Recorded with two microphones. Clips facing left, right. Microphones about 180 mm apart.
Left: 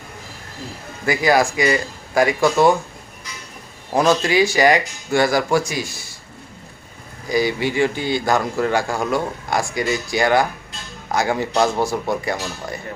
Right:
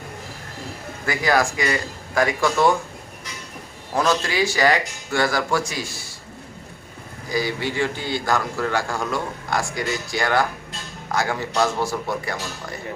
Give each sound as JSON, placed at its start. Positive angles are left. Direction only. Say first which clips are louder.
{"t": 1.0, "sound": "a man's voice", "louder": "left 4 dB", "side_deg": 10}
{"t": 4.2, "sound": "a man's voice", "louder": "left 5 dB", "side_deg": 15}
{"t": 7.3, "sound": "a man's voice", "louder": "left 5 dB", "side_deg": 15}